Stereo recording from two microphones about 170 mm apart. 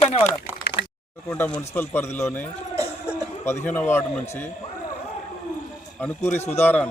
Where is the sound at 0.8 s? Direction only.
85° left.